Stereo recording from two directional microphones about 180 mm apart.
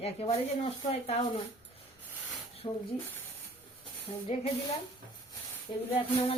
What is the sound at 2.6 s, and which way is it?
Speech, 30° left (ahead or behind).